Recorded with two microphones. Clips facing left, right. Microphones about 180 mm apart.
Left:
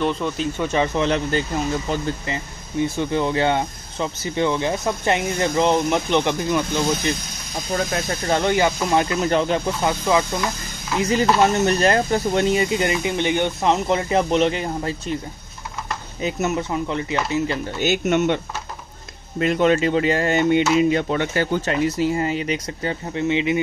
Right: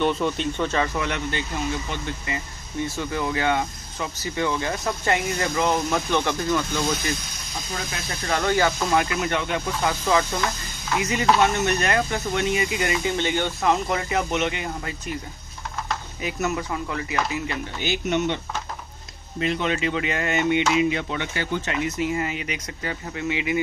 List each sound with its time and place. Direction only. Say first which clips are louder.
0.0 s speech: even; centre (ahead or behind)
0.6 s speech: left 4 dB; 10° left (ahead or behind)
0.9 s speech: left 6 dB; 30° left (ahead or behind)
7.7 s speech: left 10 dB; 50° left (ahead or behind)
8.3 s speech: left 2 dB; 20° left (ahead or behind)
8.9 s speech: left 4 dB; 30° left (ahead or behind)
9.8 s speech: left 2 dB; 15° left (ahead or behind)
11.4 s speech: left 5 dB; 30° left (ahead or behind)
16.2 s speech: left 5 dB; 25° left (ahead or behind)
17.7 s speech: left 5 dB; 45° left (ahead or behind); by 23.6 s 25° left (ahead or behind)